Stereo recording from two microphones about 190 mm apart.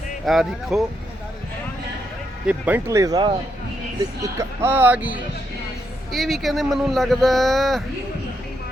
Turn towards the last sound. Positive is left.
turn(degrees=0)  # may be behind; listen again after turning